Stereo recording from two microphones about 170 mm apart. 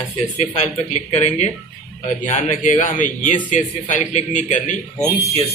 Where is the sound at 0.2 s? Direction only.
40° left (ahead or behind).